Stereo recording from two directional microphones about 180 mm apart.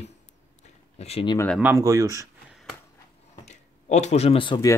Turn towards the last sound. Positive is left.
turn(degrees=20)  # may be behind; listen again after turning